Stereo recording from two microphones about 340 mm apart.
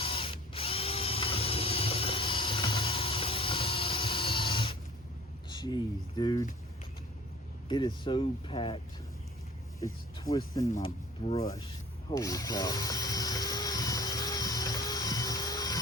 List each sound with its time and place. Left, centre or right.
0.0 s drill: centre
5.5 s speech: centre
7.7 s speech: centre
9.8 s speech: centre
12.1 s drill: centre